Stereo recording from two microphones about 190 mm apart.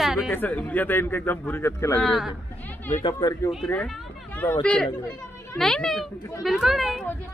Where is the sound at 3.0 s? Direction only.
20° left (ahead or behind).